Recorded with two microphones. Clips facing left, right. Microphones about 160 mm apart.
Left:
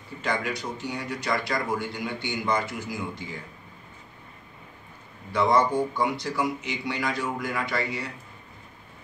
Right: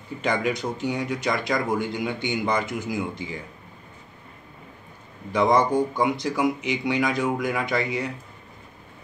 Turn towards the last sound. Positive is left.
turn(degrees=-15)  # may be behind; listen again after turning